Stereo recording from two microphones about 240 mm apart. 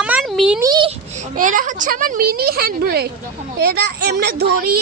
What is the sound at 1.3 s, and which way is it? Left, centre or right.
A woman's voice, right.